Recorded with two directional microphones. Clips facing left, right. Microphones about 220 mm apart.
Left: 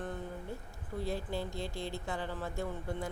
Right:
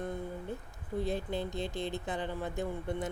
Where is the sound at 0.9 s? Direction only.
20° right (ahead or behind).